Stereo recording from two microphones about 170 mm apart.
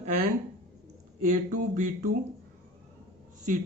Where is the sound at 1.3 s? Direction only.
45° right (ahead or behind).